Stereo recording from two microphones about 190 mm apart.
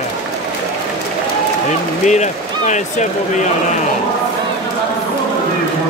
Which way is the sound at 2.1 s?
40° left (ahead or behind).